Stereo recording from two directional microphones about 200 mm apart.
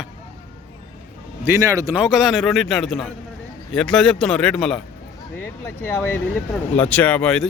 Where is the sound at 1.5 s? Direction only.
15° right (ahead or behind); by 4.8 s 5° left (ahead or behind).